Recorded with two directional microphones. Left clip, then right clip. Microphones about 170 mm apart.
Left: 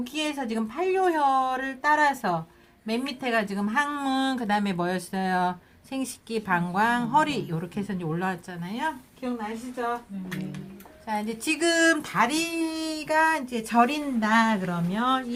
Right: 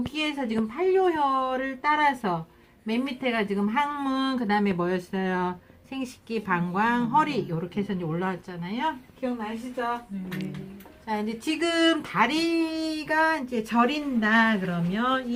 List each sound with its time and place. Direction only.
0.2 s a woman's voice: 20° left (ahead or behind)
11.0 s speech: 30° left (ahead or behind); by 14.3 s 45° left (ahead or behind)
14.3 s speech: 65° left (ahead or behind)